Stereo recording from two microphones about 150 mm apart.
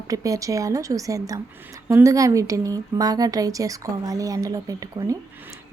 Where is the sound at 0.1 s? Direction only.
20° right (ahead or behind).